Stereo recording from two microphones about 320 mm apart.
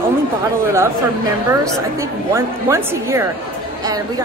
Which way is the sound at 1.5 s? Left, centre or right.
Centre.